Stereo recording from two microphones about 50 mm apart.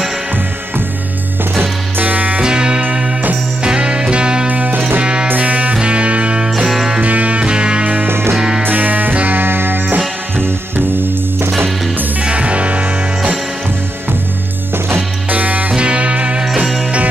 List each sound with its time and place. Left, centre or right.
1.6 s music: right
2.4 s music: centre
4.5 s music: right
5.0 s music: centre
7.0 s music: right
8.1 s music: right
8.4 s music: centre
8.6 s music: right
12.2 s music: right
15.2 s music: right